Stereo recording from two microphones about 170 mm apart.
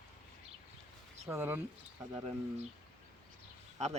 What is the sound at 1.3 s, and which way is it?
Speech, 10° right (ahead or behind).